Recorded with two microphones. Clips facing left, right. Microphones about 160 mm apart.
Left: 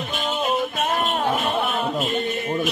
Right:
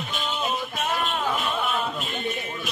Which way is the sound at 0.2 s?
45° left (ahead or behind).